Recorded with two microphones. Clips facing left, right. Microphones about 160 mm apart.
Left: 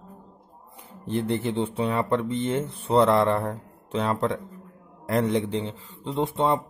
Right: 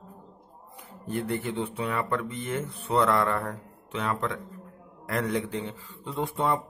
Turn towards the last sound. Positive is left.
turn(degrees=25)  # may be behind; listen again after turning